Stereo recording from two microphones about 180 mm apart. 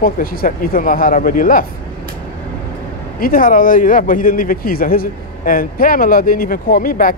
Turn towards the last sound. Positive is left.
turn(degrees=50)  # may be behind; listen again after turning